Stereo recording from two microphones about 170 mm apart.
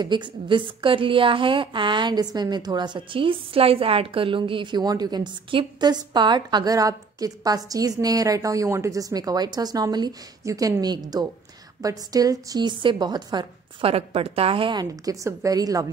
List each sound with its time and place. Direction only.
0.0 s speech: 25° right (ahead or behind)